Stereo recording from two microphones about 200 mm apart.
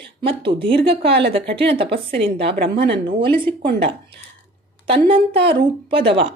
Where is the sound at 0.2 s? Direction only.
25° right (ahead or behind).